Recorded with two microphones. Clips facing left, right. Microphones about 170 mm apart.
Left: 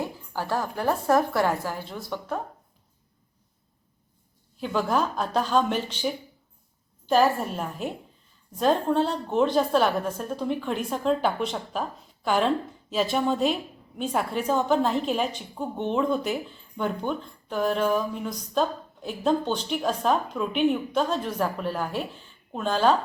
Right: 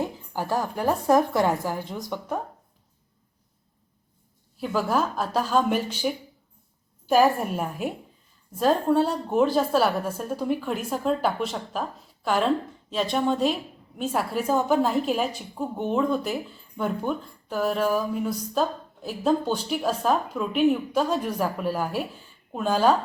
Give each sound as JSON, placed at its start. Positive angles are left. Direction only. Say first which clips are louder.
{"t": 0.0, "sound": "a woman's voice", "louder": "right 2 dB", "side_deg": -15}
{"t": 4.6, "sound": "a woman's voice", "louder": "even", "side_deg": -5}